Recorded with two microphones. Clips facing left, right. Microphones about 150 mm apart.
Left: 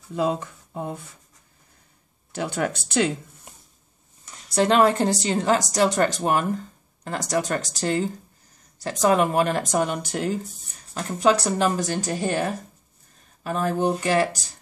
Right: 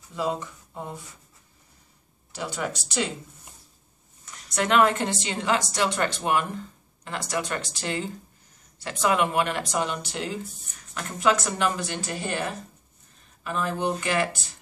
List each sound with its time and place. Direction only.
0.1 s speech: 55° left (ahead or behind)
2.3 s speech: 55° left (ahead or behind)
4.5 s a woman's voice: 30° left (ahead or behind); by 10.4 s 45° left (ahead or behind)
10.7 s a woman's voice: 35° left (ahead or behind)